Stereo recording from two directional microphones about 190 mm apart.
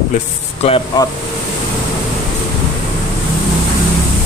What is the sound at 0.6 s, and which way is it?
Speech, 30° left (ahead or behind).